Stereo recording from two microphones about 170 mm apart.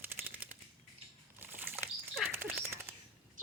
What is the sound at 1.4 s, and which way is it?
Bird flight, 10° right (ahead or behind).